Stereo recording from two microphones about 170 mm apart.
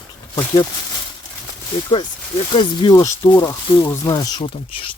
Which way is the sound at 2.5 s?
30° left (ahead or behind).